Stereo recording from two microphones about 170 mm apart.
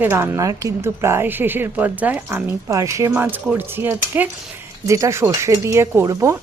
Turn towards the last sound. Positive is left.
turn(degrees=-20)  # may be behind; listen again after turning